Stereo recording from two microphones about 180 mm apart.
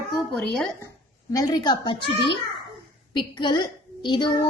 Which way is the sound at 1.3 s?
20° left (ahead or behind).